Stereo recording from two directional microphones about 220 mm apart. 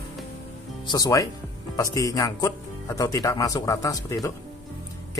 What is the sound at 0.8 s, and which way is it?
Speech, 15° left (ahead or behind).